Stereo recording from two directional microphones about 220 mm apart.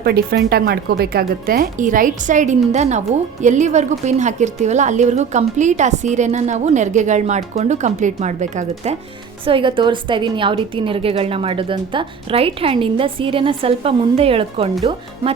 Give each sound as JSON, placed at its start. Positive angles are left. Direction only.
{"t": 0.0, "sound": "a woman's voice", "side_deg": -45}